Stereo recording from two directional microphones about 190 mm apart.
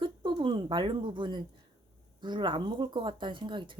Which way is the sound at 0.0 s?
25° right (ahead or behind).